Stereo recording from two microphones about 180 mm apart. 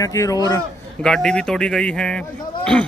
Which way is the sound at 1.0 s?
5° left (ahead or behind).